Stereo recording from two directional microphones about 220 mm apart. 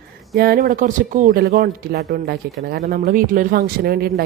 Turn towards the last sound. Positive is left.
turn(degrees=-45)  # may be behind; listen again after turning